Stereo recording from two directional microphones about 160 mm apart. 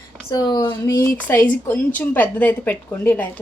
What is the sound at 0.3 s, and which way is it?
A woman's voice, 25° left (ahead or behind).